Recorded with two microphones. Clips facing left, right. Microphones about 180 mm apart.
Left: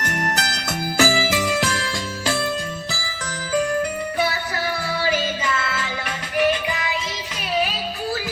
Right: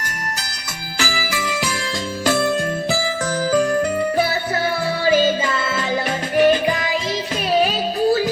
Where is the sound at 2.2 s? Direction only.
45° right (ahead or behind).